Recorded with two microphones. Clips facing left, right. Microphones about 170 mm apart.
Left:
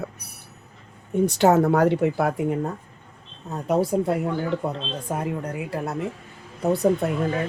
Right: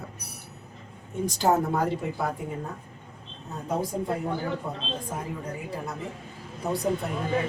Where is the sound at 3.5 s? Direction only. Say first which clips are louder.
Left 8 dB; 75° left (ahead or behind).